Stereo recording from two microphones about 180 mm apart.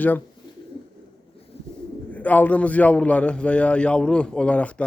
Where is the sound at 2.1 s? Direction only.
10° left (ahead or behind).